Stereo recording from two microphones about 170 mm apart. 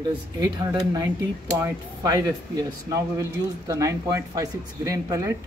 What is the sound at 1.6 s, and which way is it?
Speech, 20° right (ahead or behind).